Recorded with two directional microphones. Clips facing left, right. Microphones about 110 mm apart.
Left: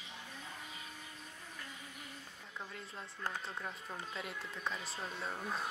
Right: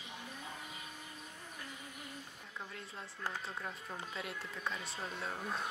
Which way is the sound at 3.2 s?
Centre (ahead or behind).